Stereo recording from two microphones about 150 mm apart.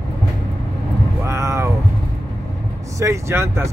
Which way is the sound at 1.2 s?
20° right (ahead or behind).